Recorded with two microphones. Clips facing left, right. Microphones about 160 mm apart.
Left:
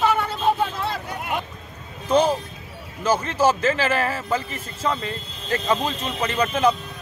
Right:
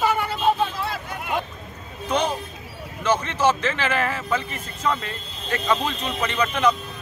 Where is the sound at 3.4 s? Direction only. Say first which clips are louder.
Left 2 dB; 35° left (ahead or behind).